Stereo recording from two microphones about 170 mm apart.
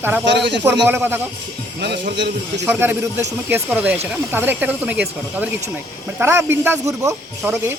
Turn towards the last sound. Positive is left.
turn(degrees=-15)  # may be behind; listen again after turning